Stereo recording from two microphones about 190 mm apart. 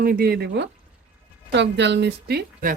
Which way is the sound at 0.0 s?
50° right (ahead or behind).